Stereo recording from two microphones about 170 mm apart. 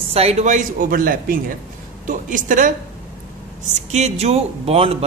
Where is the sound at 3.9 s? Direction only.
40° right (ahead or behind).